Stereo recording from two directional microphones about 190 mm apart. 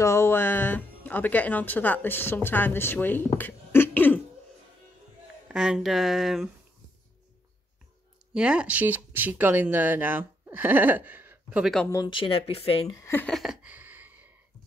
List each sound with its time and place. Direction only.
0.0 s speech: 15° left (ahead or behind)
3.3 s cough: 10° left (ahead or behind)
5.5 s speech: 5° right (ahead or behind)
8.3 s speech: 5° right (ahead or behind)
11.9 s speech: 25° left (ahead or behind)
12.8 s a sound: 15° left (ahead or behind); by 14.3 s 10° right (ahead or behind)